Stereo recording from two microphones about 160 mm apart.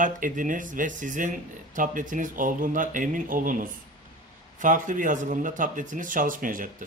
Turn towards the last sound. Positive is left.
turn(degrees=-60)  # may be behind; listen again after turning